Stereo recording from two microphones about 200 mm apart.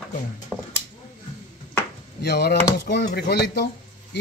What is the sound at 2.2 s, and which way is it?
A man's voice, 55° left (ahead or behind).